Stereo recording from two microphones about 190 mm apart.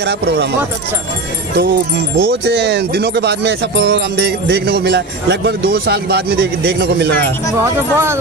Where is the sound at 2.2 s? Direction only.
55° right (ahead or behind).